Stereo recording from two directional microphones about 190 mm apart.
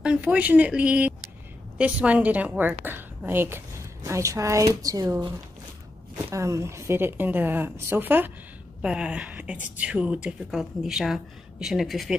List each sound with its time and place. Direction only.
0.0 s a woman's voice: 5° right (ahead or behind)
6.3 s a woman's voice: 15° right (ahead or behind); by 12.2 s centre (ahead or behind)